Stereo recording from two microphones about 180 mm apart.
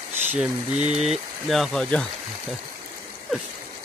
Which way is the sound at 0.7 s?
40° right (ahead or behind).